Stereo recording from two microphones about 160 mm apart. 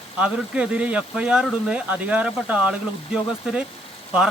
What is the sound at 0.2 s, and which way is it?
Speech, 5° right (ahead or behind).